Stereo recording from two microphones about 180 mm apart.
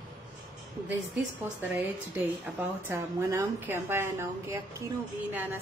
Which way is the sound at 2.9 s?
15° right (ahead or behind).